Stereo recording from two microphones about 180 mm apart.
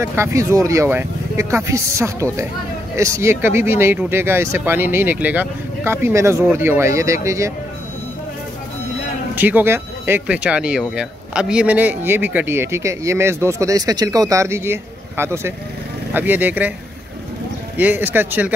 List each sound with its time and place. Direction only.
0.0 s speech: 15° right (ahead or behind)
9.3 s speech: 10° right (ahead or behind)
17.7 s speech: 10° right (ahead or behind)